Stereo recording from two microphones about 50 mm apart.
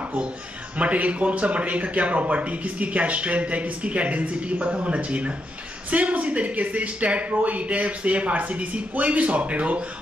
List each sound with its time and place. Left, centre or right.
0.7 s speech: right